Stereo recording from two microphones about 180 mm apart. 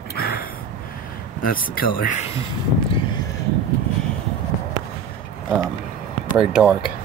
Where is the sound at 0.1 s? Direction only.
55° left (ahead or behind).